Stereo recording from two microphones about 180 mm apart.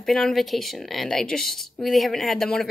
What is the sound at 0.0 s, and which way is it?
A woman's voice, centre (ahead or behind).